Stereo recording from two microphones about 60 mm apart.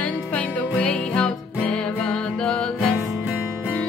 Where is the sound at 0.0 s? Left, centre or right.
Left.